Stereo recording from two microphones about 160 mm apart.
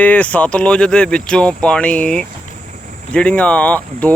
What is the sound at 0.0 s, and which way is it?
Speech, 10° left (ahead or behind).